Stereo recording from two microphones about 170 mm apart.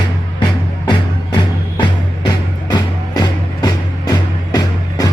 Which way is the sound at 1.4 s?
25° left (ahead or behind).